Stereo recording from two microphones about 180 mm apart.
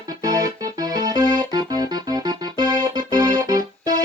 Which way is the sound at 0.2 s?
20° right (ahead or behind).